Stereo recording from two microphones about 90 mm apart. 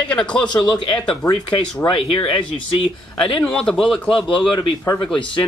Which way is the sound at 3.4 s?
10° left (ahead or behind).